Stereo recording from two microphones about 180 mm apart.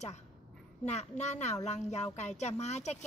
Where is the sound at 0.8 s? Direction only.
40° left (ahead or behind).